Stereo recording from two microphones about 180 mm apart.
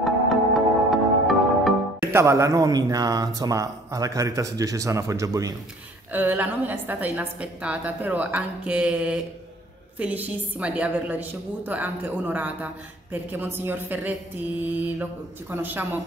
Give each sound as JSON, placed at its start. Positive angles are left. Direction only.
{"t": 0.8, "sound": "music", "side_deg": 0}
{"t": 2.1, "sound": "a man's voice", "side_deg": -15}